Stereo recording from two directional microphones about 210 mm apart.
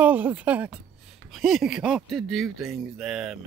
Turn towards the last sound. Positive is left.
turn(degrees=-5)  # may be behind; listen again after turning